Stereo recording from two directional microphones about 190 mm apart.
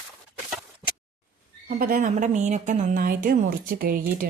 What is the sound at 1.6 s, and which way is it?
A woman's voice, 50° right (ahead or behind).